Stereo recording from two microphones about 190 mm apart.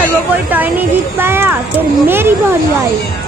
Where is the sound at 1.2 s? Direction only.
10° right (ahead or behind).